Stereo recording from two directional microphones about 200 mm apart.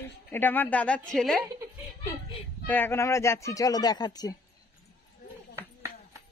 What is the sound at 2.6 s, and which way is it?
Speech, 10° left (ahead or behind).